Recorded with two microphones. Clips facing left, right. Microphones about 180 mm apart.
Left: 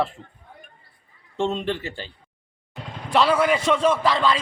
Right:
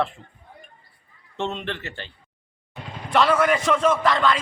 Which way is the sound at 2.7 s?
5° left (ahead or behind).